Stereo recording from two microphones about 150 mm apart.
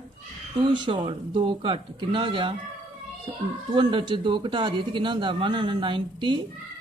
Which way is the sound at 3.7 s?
35° right (ahead or behind).